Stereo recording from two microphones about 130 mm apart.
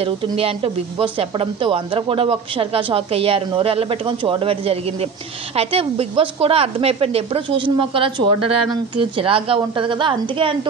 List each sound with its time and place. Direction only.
0.4 s a woman's voice: 45° right (ahead or behind)